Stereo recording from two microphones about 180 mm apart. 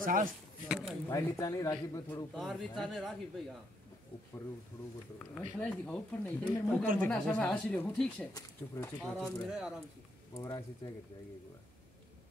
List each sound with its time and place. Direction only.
0.0 s speech: 50° right (ahead or behind)
0.7 s speech: 5° right (ahead or behind)
1.4 s speech: 15° left (ahead or behind)
2.3 s speech: centre (ahead or behind)
5.2 s speech: 5° left (ahead or behind)
8.3 s speech: 20° left (ahead or behind)
9.0 s speech: 5° left (ahead or behind)
10.3 s speech: 20° left (ahead or behind)